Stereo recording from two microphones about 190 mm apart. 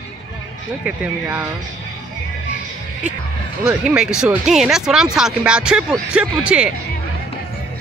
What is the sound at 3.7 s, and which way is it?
Speech, 5° right (ahead or behind).